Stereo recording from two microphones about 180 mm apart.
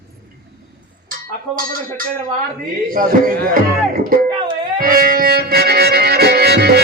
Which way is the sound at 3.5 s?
50° right (ahead or behind).